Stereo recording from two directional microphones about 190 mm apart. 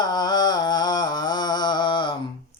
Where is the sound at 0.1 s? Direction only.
20° left (ahead or behind).